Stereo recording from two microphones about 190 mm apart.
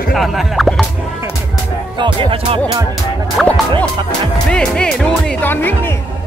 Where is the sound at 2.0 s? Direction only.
25° right (ahead or behind).